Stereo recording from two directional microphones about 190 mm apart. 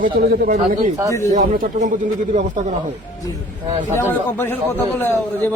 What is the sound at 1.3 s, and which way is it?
Speech, 45° right (ahead or behind).